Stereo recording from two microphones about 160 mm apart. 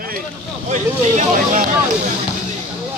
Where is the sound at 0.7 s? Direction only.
50° right (ahead or behind).